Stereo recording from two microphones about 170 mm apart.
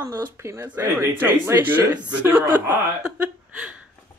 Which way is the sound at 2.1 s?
10° right (ahead or behind).